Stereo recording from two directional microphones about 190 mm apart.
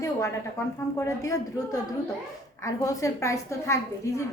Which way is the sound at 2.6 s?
15° left (ahead or behind).